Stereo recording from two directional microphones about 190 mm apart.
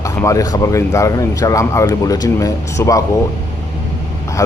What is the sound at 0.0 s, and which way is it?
Speech, 15° left (ahead or behind).